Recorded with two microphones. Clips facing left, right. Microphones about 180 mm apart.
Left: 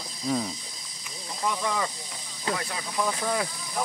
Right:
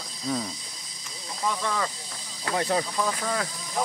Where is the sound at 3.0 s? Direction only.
10° left (ahead or behind).